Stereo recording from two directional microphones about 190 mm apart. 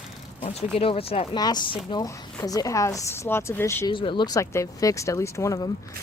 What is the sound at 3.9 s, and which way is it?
Speech, 25° left (ahead or behind).